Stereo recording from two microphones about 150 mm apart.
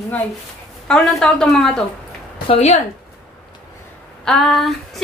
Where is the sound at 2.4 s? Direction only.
45° left (ahead or behind).